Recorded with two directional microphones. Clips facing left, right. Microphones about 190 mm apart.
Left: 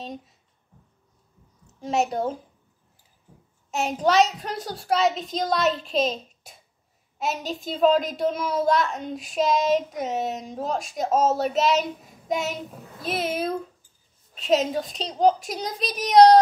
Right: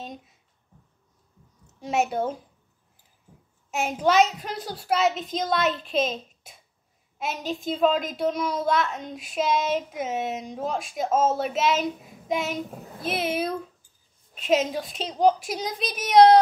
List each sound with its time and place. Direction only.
2.0 s a woman's voice: 40° left (ahead or behind)
3.8 s a woman's voice: centre (ahead or behind)